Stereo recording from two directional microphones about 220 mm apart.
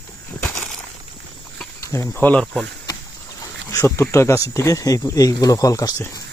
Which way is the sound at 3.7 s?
15° left (ahead or behind).